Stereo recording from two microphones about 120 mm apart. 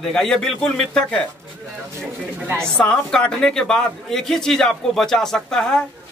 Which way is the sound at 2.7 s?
10° left (ahead or behind).